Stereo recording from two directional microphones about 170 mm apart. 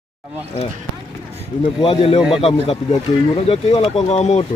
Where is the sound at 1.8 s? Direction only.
35° left (ahead or behind).